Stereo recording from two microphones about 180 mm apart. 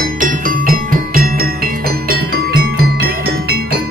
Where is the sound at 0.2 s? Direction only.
55° right (ahead or behind).